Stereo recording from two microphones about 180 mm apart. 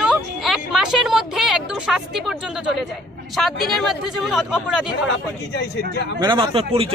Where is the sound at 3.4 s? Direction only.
Centre (ahead or behind).